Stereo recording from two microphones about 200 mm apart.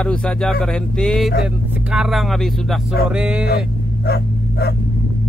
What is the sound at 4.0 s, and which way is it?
Dog, 55° left (ahead or behind).